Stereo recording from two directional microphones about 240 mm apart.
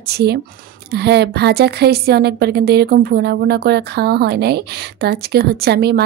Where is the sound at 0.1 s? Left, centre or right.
Right.